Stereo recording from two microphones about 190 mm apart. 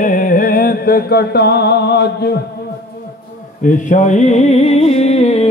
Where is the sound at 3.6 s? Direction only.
40° left (ahead or behind).